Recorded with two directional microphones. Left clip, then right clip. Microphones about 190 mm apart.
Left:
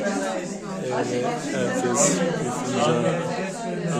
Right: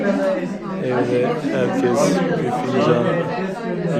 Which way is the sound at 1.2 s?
Centre (ahead or behind).